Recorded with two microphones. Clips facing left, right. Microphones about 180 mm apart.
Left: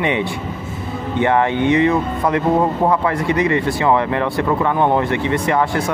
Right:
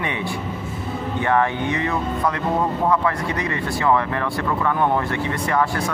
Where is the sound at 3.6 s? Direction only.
25° left (ahead or behind).